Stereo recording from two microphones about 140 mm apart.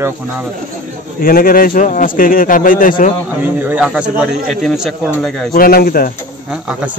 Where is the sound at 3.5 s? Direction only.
15° right (ahead or behind).